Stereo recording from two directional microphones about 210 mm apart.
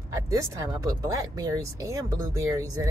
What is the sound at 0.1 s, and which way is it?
Speech, 15° right (ahead or behind).